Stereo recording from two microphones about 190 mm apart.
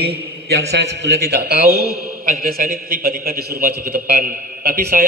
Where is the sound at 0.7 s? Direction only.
65° right (ahead or behind).